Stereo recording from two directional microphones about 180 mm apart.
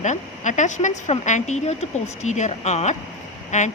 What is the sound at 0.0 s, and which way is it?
Speech, 40° left (ahead or behind).